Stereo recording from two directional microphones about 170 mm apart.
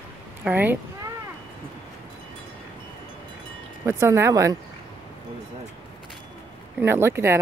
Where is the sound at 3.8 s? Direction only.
15° right (ahead or behind).